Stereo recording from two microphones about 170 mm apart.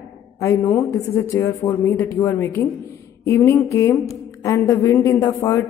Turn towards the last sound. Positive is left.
turn(degrees=15)  # may be behind; listen again after turning